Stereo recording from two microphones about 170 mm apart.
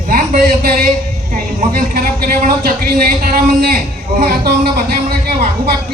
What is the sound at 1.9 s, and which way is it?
Speech, 65° right (ahead or behind).